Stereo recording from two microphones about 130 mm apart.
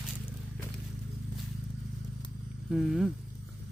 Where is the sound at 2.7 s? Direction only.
5° right (ahead or behind).